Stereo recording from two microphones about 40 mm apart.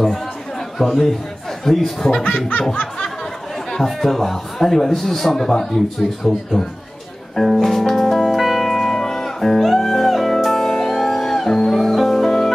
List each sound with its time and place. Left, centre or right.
0.7 s a man's voice: centre
2.7 s snicker: left
3.8 s a man's voice: centre
7.3 s music: centre
8.4 s music: centre